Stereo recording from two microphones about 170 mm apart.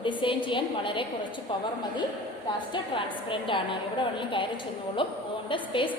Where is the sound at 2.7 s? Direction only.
30° left (ahead or behind).